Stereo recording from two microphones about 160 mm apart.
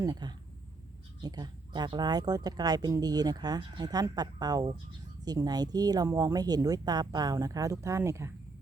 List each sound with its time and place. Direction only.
0.0 s speech: 25° right (ahead or behind)